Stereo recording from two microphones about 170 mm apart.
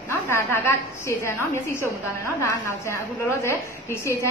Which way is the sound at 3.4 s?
15° left (ahead or behind).